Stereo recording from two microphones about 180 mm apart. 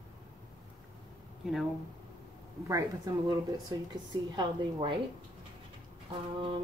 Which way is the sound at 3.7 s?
20° right (ahead or behind).